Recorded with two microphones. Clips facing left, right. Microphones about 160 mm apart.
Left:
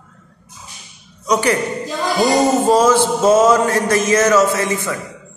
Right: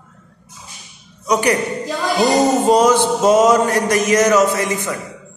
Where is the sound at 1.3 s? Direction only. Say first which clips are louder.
Even; 15° right (ahead or behind).